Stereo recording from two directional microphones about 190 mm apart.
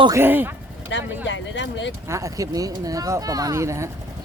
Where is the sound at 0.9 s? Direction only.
70° left (ahead or behind).